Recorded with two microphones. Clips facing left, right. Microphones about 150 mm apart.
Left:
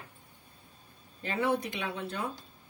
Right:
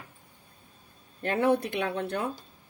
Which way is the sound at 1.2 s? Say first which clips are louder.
Right 5 dB; 60° right (ahead or behind).